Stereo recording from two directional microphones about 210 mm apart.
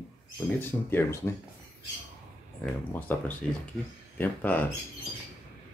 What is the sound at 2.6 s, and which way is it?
Speech, 10° left (ahead or behind).